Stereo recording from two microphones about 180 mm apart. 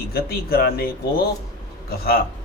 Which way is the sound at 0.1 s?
55° left (ahead or behind).